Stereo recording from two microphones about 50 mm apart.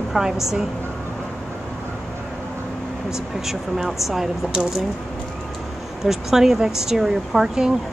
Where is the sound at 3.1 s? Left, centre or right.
Centre.